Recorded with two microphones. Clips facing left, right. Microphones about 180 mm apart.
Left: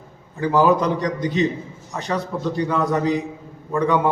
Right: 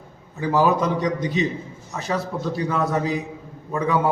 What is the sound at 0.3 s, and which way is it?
A man's voice, centre (ahead or behind).